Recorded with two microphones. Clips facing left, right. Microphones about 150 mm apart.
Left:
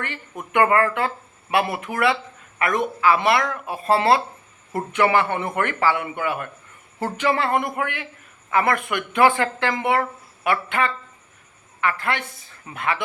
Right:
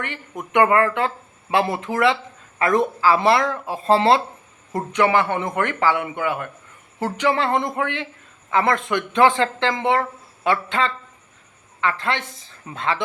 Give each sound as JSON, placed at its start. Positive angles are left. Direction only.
{"t": 0.0, "sound": "a man's voice", "side_deg": -20}